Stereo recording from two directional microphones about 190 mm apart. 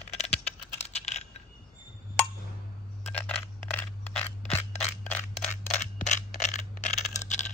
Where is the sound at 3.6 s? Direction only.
5° left (ahead or behind).